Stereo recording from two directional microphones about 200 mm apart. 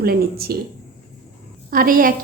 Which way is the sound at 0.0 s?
50° right (ahead or behind).